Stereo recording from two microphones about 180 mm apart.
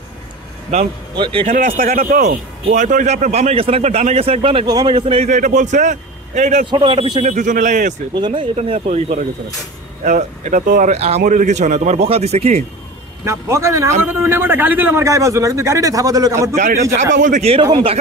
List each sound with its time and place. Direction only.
0.7 s a man's voice: 40° right (ahead or behind)
1.1 s speech: 30° right (ahead or behind)
1.5 s a man's voice: 50° right (ahead or behind)
6.7 s speech: 25° right (ahead or behind)
7.3 s speech: 45° right (ahead or behind)
8.1 s a man's voice: 25° right (ahead or behind)
13.2 s a man's voice: 15° right (ahead or behind)
16.5 s speech: 40° right (ahead or behind)
16.9 s a man's voice: 90° right
17.2 s a man's voice: 40° right (ahead or behind)
17.6 s speech: 25° right (ahead or behind)